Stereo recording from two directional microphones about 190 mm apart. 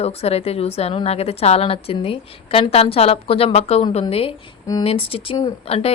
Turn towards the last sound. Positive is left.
turn(degrees=30)  # may be behind; listen again after turning